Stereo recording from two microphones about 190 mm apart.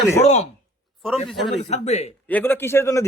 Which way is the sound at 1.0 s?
Centre (ahead or behind).